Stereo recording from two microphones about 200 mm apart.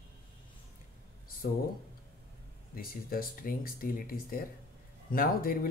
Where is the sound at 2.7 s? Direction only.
45° left (ahead or behind).